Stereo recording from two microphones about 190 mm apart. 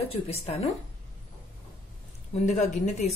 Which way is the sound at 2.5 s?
40° left (ahead or behind).